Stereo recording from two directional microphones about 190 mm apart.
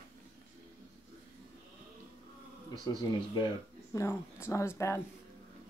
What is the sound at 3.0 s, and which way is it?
Speech, 20° left (ahead or behind).